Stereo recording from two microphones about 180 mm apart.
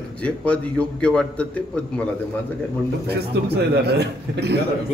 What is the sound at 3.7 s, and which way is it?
Speech, 65° right (ahead or behind).